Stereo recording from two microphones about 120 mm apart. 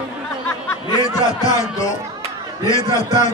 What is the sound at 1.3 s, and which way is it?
A man's voice, 30° left (ahead or behind).